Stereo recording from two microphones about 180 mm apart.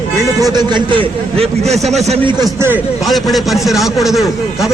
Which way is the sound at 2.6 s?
10° right (ahead or behind).